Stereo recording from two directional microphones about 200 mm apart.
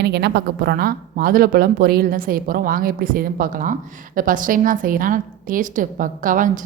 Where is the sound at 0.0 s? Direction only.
55° right (ahead or behind).